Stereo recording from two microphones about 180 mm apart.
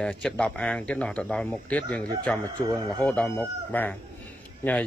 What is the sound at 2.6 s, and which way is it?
Speech, 20° right (ahead or behind).